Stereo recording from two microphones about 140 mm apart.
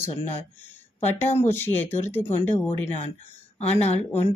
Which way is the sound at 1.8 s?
55° left (ahead or behind).